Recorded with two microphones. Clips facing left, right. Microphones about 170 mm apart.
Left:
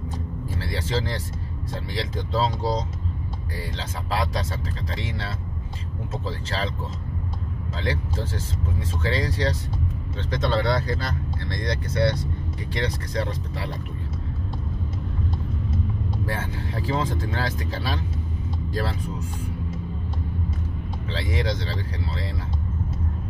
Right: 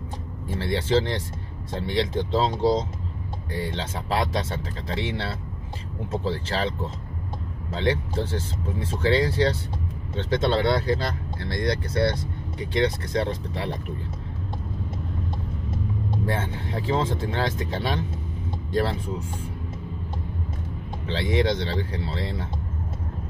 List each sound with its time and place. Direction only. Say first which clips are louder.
0.6 s speech: right 6 dB; 25° right (ahead or behind)
3.5 s speech: right 5 dB; 25° right (ahead or behind)
6.2 s speech: right 3 dB; 30° right (ahead or behind)
16.3 s speech: right 2 dB; 25° right (ahead or behind)
21.3 s speech: right 5 dB; 25° right (ahead or behind)